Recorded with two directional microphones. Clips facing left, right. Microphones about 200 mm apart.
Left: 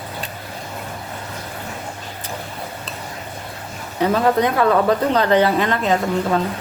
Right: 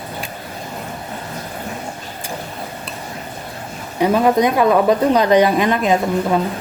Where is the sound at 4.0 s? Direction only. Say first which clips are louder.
Right 3 dB; 15° right (ahead or behind).